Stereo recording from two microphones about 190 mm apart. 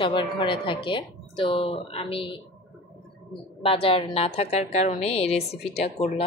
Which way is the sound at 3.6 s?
30° left (ahead or behind).